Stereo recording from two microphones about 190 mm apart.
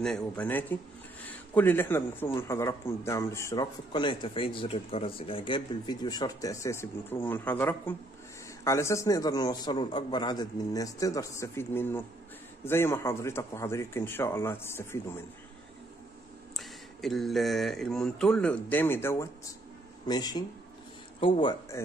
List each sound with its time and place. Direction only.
0.0 s a man's voice: 5° left (ahead or behind)
16.5 s a sound: centre (ahead or behind)
20.1 s a man's voice: 20° left (ahead or behind)